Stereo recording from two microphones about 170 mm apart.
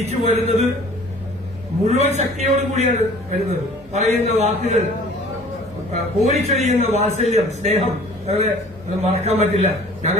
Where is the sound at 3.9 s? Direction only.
45° right (ahead or behind).